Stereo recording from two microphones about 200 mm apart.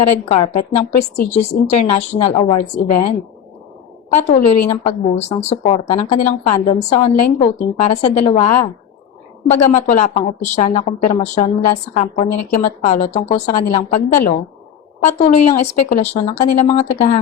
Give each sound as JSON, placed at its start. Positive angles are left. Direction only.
{"t": 0.3, "sound": "a woman's voice", "side_deg": 35}
{"t": 1.1, "sound": "a woman's voice", "side_deg": 55}
{"t": 1.4, "sound": "a woman's voice", "side_deg": 35}
{"t": 4.1, "sound": "a woman's voice", "side_deg": 40}